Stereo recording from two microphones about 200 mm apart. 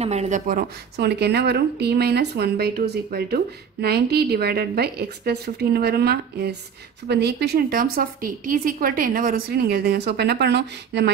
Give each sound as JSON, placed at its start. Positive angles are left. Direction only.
{"t": 0.0, "sound": "a woman's voice", "side_deg": -35}